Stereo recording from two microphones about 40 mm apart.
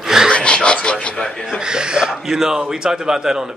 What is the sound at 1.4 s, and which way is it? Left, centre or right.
Speech, centre.